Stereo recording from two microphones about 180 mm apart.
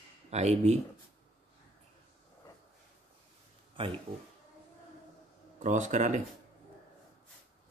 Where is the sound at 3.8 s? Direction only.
30° right (ahead or behind).